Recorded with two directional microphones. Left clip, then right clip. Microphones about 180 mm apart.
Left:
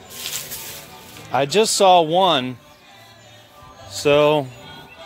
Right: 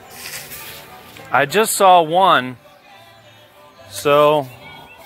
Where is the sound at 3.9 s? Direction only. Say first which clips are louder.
Right 2 dB; 5° right (ahead or behind).